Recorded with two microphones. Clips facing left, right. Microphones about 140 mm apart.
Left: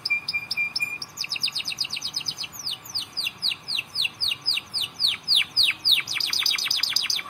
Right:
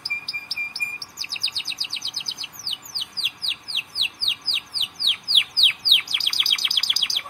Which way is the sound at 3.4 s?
15° right (ahead or behind).